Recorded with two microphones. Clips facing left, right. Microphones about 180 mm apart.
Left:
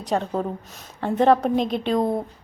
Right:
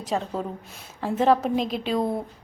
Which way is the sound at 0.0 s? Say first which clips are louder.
Left 3 dB; centre (ahead or behind).